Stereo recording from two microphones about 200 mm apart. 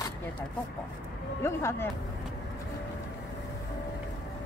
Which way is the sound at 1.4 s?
15° left (ahead or behind).